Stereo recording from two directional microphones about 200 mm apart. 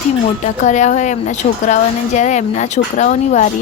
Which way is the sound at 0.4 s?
35° left (ahead or behind).